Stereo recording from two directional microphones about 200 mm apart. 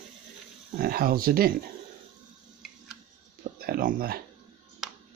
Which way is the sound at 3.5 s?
50° right (ahead or behind).